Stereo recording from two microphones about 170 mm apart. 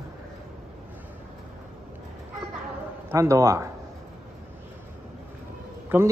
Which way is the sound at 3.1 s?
15° right (ahead or behind).